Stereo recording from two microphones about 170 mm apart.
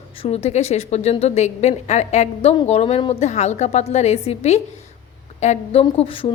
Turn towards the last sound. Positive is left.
turn(degrees=30)  # may be behind; listen again after turning